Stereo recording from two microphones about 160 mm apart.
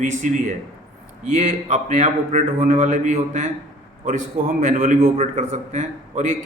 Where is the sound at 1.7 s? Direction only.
45° right (ahead or behind).